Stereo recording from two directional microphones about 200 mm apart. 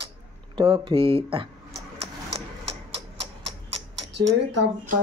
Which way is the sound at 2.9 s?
30° right (ahead or behind).